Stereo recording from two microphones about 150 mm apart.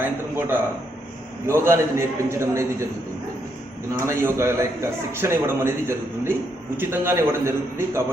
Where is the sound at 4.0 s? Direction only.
15° right (ahead or behind).